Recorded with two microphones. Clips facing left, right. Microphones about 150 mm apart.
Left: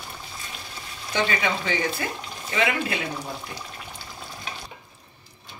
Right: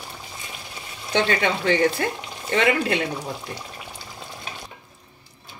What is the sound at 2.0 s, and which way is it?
Speech, 60° right (ahead or behind).